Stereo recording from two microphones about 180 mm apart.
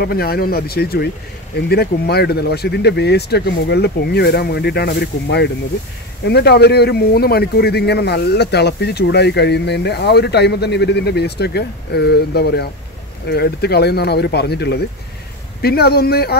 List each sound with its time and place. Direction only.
0.0 s a man's voice: 60° left (ahead or behind)